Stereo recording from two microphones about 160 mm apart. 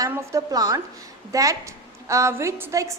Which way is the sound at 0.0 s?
15° right (ahead or behind).